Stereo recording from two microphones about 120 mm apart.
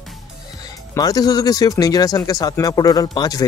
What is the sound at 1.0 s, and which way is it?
Speech, 35° left (ahead or behind).